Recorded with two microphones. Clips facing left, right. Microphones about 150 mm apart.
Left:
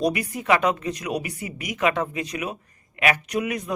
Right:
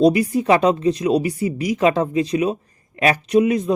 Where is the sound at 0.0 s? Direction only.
30° right (ahead or behind).